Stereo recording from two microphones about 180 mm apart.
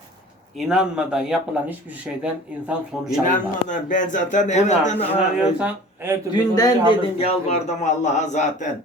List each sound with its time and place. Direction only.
0.7 s speech: 5° right (ahead or behind)
3.2 s a man's voice: 45° left (ahead or behind)
5.4 s speech: 5° right (ahead or behind)
6.3 s a man's voice: 20° left (ahead or behind)
7.2 s speech: 35° left (ahead or behind)